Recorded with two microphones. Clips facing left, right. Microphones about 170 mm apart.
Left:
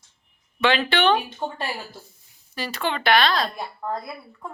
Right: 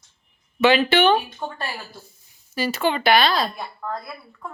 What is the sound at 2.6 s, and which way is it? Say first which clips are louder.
Speech: right 5 dB; 5° right (ahead or behind).